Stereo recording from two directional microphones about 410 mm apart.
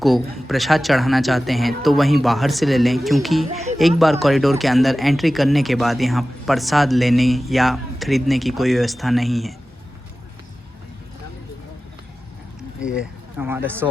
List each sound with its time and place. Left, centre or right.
0.0 s speech: centre
12.8 s speech: centre